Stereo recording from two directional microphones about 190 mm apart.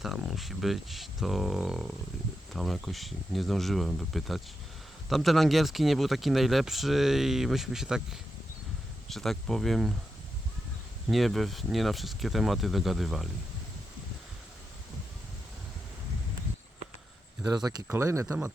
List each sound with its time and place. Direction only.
0.0 s speech: centre (ahead or behind)
11.1 s speech: centre (ahead or behind)
17.5 s speech: 20° right (ahead or behind)